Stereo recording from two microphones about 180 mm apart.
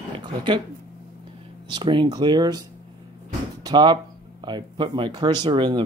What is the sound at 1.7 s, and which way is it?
Speech, 25° right (ahead or behind).